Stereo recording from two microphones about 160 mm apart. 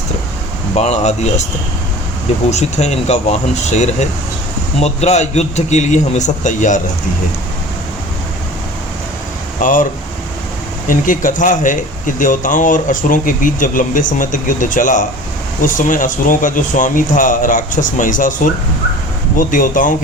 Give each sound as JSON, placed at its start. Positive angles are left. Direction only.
{"t": 0.8, "sound": "speech", "side_deg": 45}
{"t": 2.5, "sound": "speech", "side_deg": 45}
{"t": 9.6, "sound": "speech", "side_deg": 55}
{"t": 10.8, "sound": "speech", "side_deg": 55}